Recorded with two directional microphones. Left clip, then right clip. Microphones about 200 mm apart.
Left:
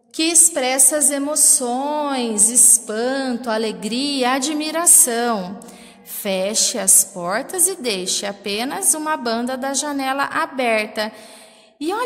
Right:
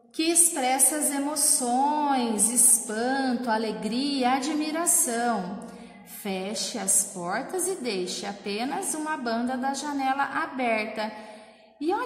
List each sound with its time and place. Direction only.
0.2 s a woman's voice: 50° left (ahead or behind)